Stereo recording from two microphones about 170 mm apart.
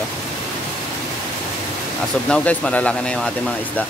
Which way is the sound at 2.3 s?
5° left (ahead or behind).